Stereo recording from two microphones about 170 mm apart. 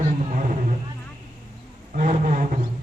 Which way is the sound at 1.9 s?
55° right (ahead or behind).